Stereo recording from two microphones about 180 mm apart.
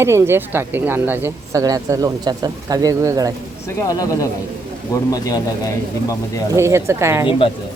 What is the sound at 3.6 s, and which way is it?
Speech, 20° left (ahead or behind).